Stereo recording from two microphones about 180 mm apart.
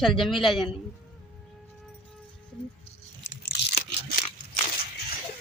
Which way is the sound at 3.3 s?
60° left (ahead or behind).